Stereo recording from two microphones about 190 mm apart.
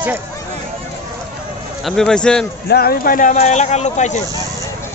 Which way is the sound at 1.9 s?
5° left (ahead or behind).